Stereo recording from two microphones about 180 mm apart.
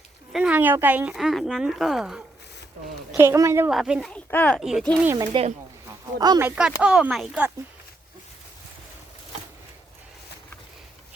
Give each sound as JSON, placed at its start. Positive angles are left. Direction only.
{"t": 0.3, "sound": "speech", "side_deg": -10}
{"t": 3.2, "sound": "a woman's voice", "side_deg": -15}
{"t": 3.7, "sound": "speech", "side_deg": 0}
{"t": 4.1, "sound": "speech", "side_deg": 10}
{"t": 5.1, "sound": "speech", "side_deg": -25}
{"t": 6.4, "sound": "speech", "side_deg": -10}